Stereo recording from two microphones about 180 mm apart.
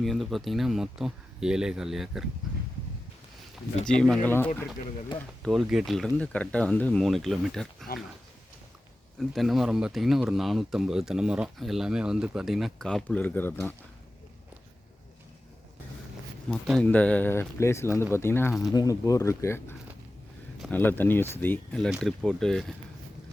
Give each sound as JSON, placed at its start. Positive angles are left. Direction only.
{"t": 0.0, "sound": "speech", "side_deg": 0}
{"t": 3.8, "sound": "speech", "side_deg": 5}
{"t": 9.1, "sound": "speech", "side_deg": 0}
{"t": 16.5, "sound": "speech", "side_deg": 5}